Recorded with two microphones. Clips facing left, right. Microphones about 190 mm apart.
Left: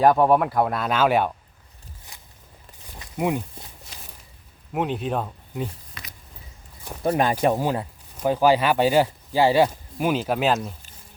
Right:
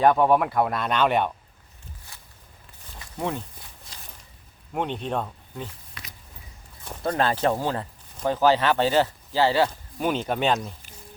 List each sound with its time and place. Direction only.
0.2 s speech: centre (ahead or behind)
2.1 s walk: 15° left (ahead or behind)
3.2 s speech: 15° left (ahead or behind)
4.7 s speech: 5° left (ahead or behind)
6.8 s speech: 15° left (ahead or behind)